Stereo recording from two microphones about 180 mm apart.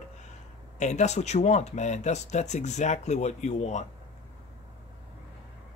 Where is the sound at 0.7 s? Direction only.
40° left (ahead or behind).